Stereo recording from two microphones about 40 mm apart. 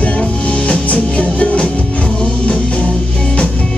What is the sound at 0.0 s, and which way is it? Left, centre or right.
Music, left.